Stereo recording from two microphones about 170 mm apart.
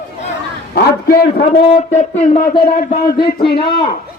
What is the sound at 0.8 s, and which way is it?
Speech, 60° left (ahead or behind).